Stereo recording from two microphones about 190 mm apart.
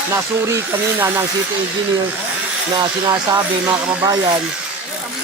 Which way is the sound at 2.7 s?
25° right (ahead or behind).